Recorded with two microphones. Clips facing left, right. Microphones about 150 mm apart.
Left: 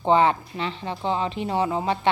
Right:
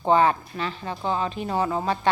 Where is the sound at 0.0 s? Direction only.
25° left (ahead or behind).